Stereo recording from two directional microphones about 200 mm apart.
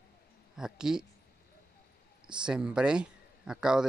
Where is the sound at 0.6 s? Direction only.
5° right (ahead or behind).